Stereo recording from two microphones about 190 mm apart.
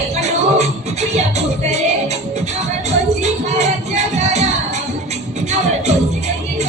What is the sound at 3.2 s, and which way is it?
Music, 35° right (ahead or behind).